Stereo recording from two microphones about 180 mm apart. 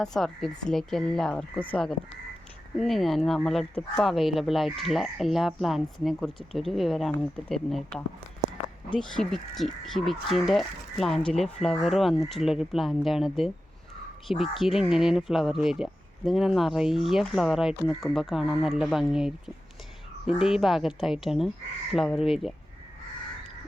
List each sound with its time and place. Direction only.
0.0 s speech: centre (ahead or behind)